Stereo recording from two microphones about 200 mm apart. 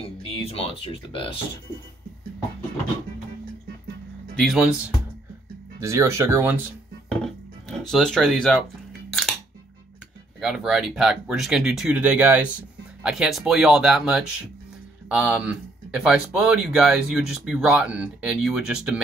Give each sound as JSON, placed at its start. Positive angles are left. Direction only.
{"t": 0.0, "sound": "speech", "side_deg": 30}
{"t": 4.4, "sound": "speech", "side_deg": 0}
{"t": 5.8, "sound": "speech", "side_deg": -15}
{"t": 7.6, "sound": "speech", "side_deg": 0}
{"t": 10.4, "sound": "speech", "side_deg": -5}